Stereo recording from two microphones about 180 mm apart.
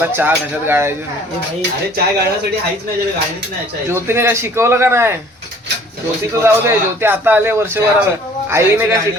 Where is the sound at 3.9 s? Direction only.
15° right (ahead or behind).